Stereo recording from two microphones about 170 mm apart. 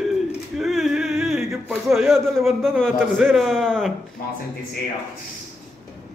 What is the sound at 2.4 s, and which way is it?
Speech, 5° left (ahead or behind).